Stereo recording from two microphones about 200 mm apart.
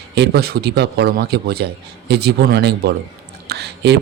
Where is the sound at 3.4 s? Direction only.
55° right (ahead or behind).